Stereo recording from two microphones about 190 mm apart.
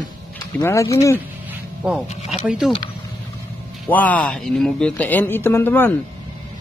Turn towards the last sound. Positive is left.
turn(degrees=10)  # may be behind; listen again after turning